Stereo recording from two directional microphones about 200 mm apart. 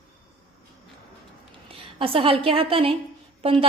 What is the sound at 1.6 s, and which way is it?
A woman's voice, 25° right (ahead or behind).